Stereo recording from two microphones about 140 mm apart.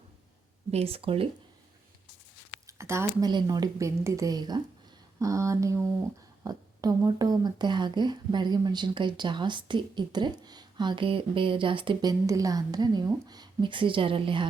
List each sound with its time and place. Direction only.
0.7 s speech: 45° right (ahead or behind)
2.6 s a sound: 20° right (ahead or behind)
3.2 s a woman's voice: 30° right (ahead or behind)
12.2 s a woman's voice: 25° right (ahead or behind)